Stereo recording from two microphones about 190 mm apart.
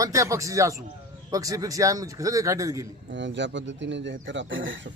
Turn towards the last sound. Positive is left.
turn(degrees=-80)